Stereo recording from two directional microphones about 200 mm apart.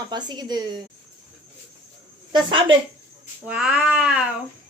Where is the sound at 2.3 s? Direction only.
25° right (ahead or behind).